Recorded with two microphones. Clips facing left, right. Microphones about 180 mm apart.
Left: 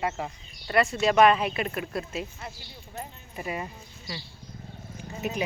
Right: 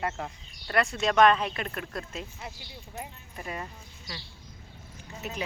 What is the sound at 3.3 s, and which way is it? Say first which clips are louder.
Speech: left 4 dB; 10° left (ahead or behind).